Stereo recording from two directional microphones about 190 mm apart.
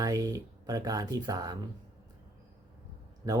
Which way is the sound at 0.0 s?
20° right (ahead or behind).